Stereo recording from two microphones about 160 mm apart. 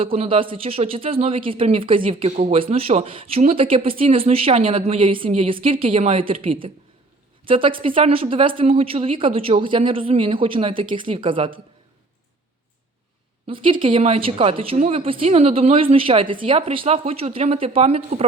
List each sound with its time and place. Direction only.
0.0 s a woman's voice: 35° right (ahead or behind)
13.5 s a woman's voice: 30° right (ahead or behind)